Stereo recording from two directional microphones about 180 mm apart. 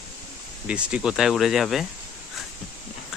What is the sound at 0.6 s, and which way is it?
Speech, 5° right (ahead or behind).